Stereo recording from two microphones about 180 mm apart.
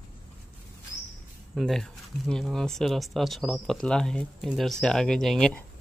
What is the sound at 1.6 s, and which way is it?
Speech, centre (ahead or behind).